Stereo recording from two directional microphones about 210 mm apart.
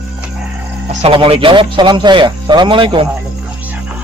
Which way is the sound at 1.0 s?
25° right (ahead or behind).